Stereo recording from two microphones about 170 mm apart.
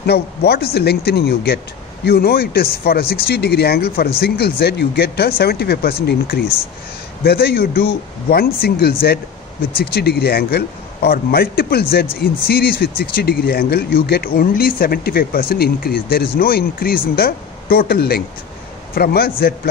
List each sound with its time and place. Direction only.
0.0 s speech: 70° left (ahead or behind)